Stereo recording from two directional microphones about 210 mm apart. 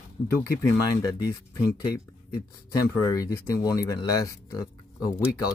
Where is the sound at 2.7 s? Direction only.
15° left (ahead or behind).